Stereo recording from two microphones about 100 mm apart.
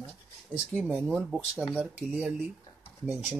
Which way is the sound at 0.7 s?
10° right (ahead or behind).